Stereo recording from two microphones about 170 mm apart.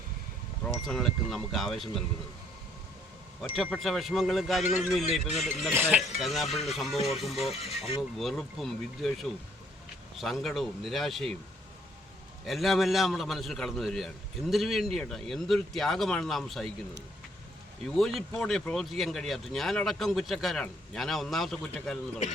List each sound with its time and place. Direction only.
0.9 s speech: centre (ahead or behind)
3.5 s speech: centre (ahead or behind)
5.7 s speech: 15° right (ahead or behind)
6.1 s speech: centre (ahead or behind)
7.4 s speech: 40° left (ahead or behind)
8.2 s speech: centre (ahead or behind)
12.5 s speech: centre (ahead or behind)
17.8 s speech: centre (ahead or behind)